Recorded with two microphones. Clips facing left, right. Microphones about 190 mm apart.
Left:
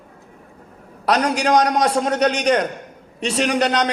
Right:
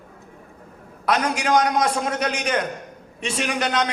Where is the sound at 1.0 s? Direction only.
35° left (ahead or behind).